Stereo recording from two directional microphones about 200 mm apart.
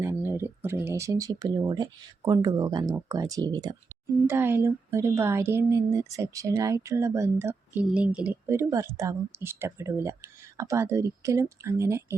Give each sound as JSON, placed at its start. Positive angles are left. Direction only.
{"t": 0.0, "sound": "speech", "side_deg": -10}